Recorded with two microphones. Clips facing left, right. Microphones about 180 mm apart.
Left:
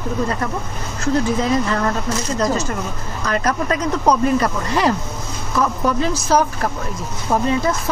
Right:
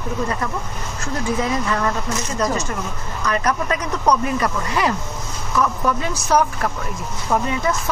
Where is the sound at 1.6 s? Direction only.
35° left (ahead or behind).